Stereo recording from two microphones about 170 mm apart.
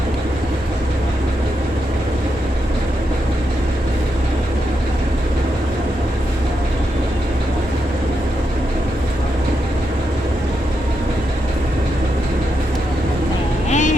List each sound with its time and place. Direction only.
13.7 s vehicle: 45° left (ahead or behind)